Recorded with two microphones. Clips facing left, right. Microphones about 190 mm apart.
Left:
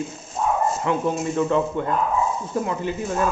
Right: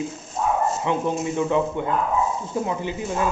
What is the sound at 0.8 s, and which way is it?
Speech, 15° right (ahead or behind).